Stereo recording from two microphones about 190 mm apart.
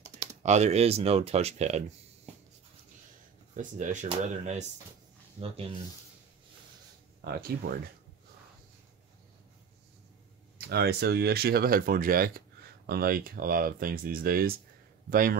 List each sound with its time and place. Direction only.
0.4 s speech: 35° right (ahead or behind)
3.5 s speech: 40° right (ahead or behind)
7.2 s speech: 55° right (ahead or behind)
10.6 s speech: 55° right (ahead or behind)